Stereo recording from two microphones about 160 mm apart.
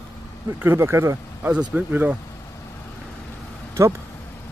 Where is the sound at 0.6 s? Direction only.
15° right (ahead or behind).